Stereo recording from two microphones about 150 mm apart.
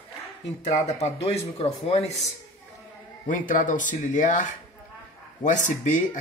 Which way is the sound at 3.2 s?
65° left (ahead or behind).